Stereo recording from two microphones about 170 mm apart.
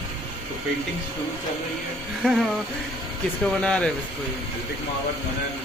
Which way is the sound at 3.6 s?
5° left (ahead or behind).